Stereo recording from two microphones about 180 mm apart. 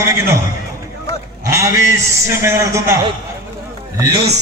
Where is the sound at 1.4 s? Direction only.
15° right (ahead or behind).